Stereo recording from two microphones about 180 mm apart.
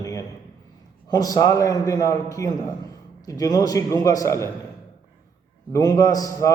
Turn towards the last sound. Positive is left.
turn(degrees=20)  # may be behind; listen again after turning